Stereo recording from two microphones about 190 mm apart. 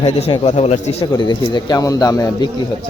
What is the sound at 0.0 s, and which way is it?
Speech, 35° left (ahead or behind).